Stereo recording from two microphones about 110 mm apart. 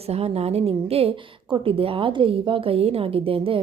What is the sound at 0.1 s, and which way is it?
A woman's voice, 70° right (ahead or behind).